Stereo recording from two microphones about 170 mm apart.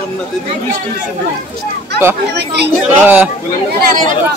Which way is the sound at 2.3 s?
80° right.